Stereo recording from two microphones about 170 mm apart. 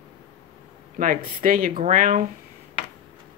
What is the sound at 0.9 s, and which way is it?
Speech, 50° right (ahead or behind).